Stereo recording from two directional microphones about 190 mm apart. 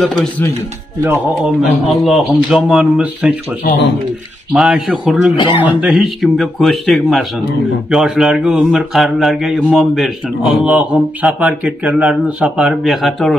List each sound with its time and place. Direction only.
0.0 s speech: centre (ahead or behind)
1.4 s speech: centre (ahead or behind)
4.5 s speech: 5° right (ahead or behind)
5.3 s speech: 25° left (ahead or behind)
5.6 s speech: 5° right (ahead or behind)